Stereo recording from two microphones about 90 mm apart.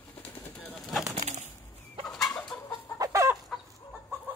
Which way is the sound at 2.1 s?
5° left (ahead or behind).